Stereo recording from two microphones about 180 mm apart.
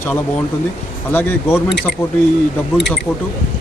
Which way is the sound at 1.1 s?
10° left (ahead or behind).